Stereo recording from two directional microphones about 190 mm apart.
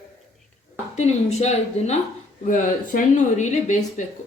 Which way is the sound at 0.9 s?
35° left (ahead or behind).